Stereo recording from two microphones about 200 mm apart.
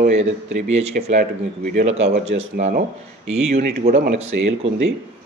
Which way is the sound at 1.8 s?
30° right (ahead or behind).